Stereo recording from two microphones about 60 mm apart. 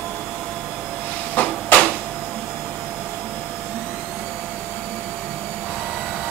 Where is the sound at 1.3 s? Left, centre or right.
Left.